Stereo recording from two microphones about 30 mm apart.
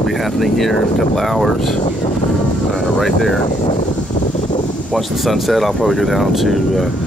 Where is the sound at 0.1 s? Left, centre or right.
Centre.